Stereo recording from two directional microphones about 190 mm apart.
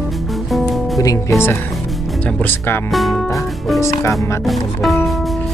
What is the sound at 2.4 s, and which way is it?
Speech, 10° left (ahead or behind).